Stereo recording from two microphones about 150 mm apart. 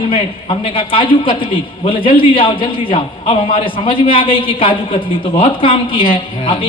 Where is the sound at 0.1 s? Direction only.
35° left (ahead or behind).